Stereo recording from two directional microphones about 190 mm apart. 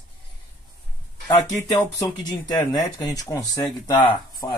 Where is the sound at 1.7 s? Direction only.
15° left (ahead or behind).